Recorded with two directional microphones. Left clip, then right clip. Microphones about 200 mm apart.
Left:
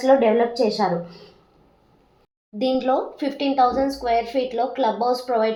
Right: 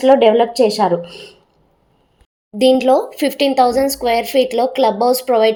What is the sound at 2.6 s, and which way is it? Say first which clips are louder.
A woman's voice: right 9 dB; 45° right (ahead or behind).